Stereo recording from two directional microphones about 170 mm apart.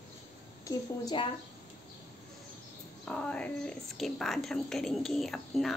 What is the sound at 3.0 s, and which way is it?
Speech, 5° left (ahead or behind).